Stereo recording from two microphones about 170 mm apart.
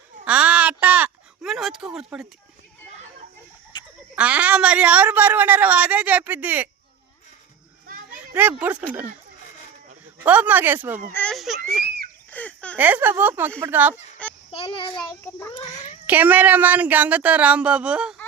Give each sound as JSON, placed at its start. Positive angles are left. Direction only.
{"t": 0.3, "sound": "a sound", "side_deg": -5}
{"t": 4.1, "sound": "a woman's voice", "side_deg": -10}
{"t": 8.1, "sound": "speech", "side_deg": -10}
{"t": 10.2, "sound": "a woman's voice", "side_deg": -10}
{"t": 11.1, "sound": "speech", "side_deg": 5}
{"t": 12.7, "sound": "a woman's voice", "side_deg": -10}
{"t": 14.5, "sound": "a child's voice", "side_deg": 30}
{"t": 15.2, "sound": "a child's voice", "side_deg": 15}
{"t": 16.0, "sound": "a woman's voice", "side_deg": -10}